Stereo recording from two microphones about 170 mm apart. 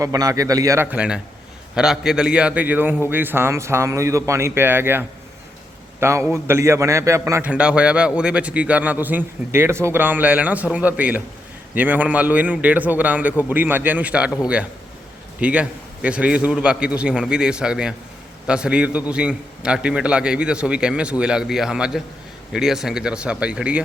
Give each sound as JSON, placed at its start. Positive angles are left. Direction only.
{"t": 0.0, "sound": "a man's voice", "side_deg": -20}